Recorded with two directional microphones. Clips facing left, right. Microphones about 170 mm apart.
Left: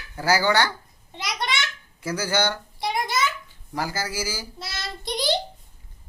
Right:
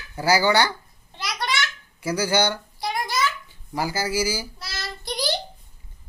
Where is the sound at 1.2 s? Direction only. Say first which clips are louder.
Right 1 dB; 20° left (ahead or behind).